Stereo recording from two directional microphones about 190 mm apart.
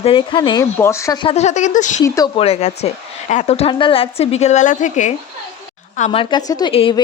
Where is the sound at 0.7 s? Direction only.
15° left (ahead or behind).